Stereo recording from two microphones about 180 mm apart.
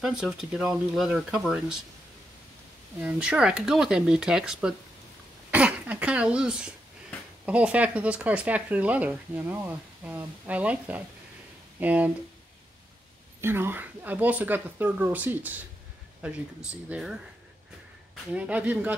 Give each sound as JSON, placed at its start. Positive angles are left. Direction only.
{"t": 0.0, "sound": "speech", "side_deg": 0}
{"t": 3.0, "sound": "speech", "side_deg": -5}
{"t": 13.4, "sound": "speech", "side_deg": -15}
{"t": 18.3, "sound": "speech", "side_deg": -10}